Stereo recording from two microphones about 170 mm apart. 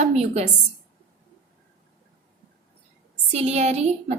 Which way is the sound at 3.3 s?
40° right (ahead or behind).